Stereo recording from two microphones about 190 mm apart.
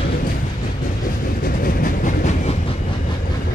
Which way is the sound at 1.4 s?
50° left (ahead or behind).